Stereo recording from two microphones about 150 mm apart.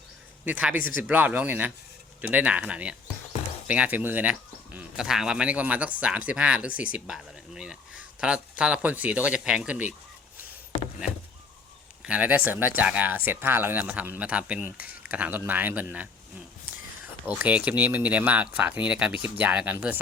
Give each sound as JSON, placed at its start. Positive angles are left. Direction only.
{"t": 0.4, "sound": "speech", "side_deg": -10}
{"t": 0.8, "sound": "speech", "side_deg": 65}
{"t": 1.0, "sound": "speech", "side_deg": -10}
{"t": 12.0, "sound": "speech", "side_deg": -10}
{"t": 17.2, "sound": "speech", "side_deg": -10}